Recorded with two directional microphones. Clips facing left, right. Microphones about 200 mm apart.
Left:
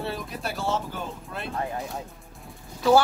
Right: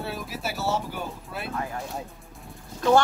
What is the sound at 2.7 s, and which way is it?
Speech, 5° left (ahead or behind).